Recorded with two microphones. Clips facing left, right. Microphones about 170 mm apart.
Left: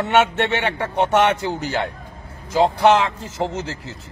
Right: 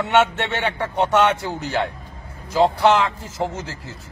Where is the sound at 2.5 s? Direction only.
20° left (ahead or behind).